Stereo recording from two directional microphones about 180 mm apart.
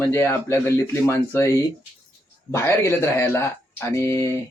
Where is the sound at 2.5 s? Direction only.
15° left (ahead or behind).